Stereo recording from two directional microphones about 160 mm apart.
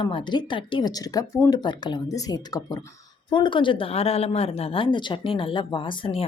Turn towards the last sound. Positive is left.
turn(degrees=35)  # may be behind; listen again after turning